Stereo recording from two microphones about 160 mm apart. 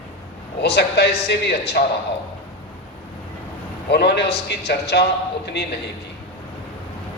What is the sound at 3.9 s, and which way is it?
A man's voice, 90° left.